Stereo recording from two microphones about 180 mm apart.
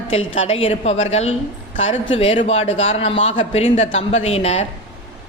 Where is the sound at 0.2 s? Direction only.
90° left.